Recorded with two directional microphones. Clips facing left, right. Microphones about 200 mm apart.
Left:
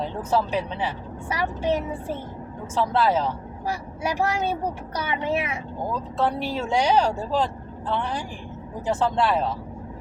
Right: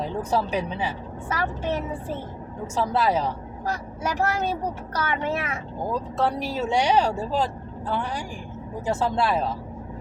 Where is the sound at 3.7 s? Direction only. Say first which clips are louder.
Left 1 dB; 10° left (ahead or behind).